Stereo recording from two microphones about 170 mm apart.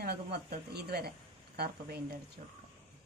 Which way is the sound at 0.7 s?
70° right (ahead or behind).